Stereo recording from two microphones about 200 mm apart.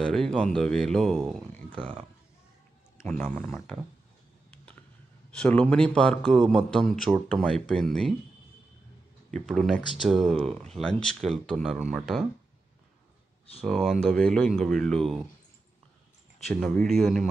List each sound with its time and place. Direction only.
0.0 s speech: 5° left (ahead or behind)
1.7 s speech: 25° right (ahead or behind)
3.0 s speech: 5° left (ahead or behind)
5.3 s speech: 5° left (ahead or behind)
9.3 s speech: centre (ahead or behind)
13.6 s speech: centre (ahead or behind)
16.5 s speech: centre (ahead or behind)